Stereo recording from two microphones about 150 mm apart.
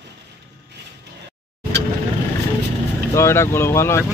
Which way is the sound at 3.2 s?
20° left (ahead or behind).